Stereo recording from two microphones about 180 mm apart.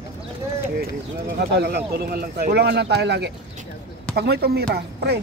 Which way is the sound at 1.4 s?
65° right (ahead or behind).